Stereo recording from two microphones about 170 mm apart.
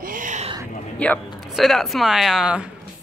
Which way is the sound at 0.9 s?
10° left (ahead or behind).